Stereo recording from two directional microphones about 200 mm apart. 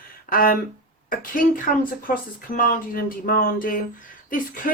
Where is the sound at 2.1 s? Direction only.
45° left (ahead or behind).